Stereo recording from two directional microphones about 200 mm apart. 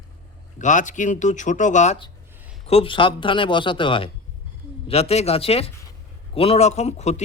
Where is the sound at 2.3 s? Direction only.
5° right (ahead or behind).